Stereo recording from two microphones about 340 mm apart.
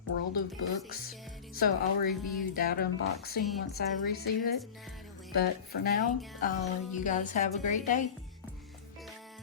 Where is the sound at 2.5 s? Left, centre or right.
Left.